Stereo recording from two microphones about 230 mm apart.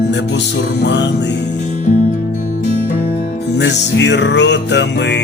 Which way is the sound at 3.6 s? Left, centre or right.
Left.